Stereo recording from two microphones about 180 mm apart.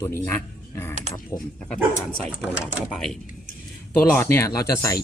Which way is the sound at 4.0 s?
15° left (ahead or behind).